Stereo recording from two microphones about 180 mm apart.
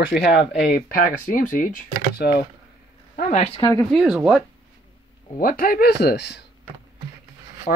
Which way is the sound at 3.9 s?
5° right (ahead or behind).